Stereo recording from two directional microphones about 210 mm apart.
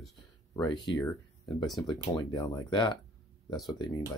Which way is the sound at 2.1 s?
20° left (ahead or behind).